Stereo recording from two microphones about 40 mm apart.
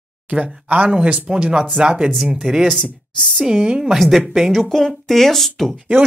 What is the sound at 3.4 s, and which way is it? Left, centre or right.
Speech, right.